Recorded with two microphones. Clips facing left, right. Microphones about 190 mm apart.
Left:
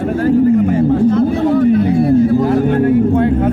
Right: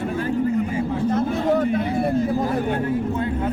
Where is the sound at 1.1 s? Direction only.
45° right (ahead or behind).